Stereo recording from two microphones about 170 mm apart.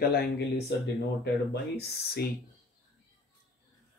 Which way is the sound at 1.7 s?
65° left (ahead or behind).